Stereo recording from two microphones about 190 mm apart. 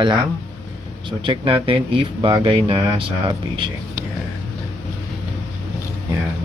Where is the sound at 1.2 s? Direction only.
25° right (ahead or behind).